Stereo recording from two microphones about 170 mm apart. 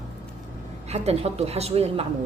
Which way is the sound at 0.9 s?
40° right (ahead or behind).